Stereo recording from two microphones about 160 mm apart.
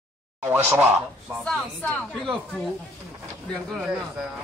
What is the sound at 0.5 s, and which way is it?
Speech, 15° right (ahead or behind).